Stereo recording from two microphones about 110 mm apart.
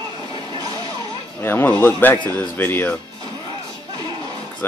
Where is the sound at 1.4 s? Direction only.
20° left (ahead or behind).